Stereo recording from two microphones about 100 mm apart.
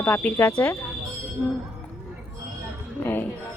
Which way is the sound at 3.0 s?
20° left (ahead or behind).